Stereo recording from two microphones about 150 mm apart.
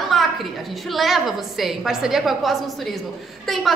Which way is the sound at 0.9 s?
Centre (ahead or behind).